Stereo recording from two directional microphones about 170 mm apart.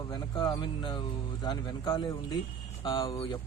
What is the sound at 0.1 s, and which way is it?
Speech, 25° left (ahead or behind).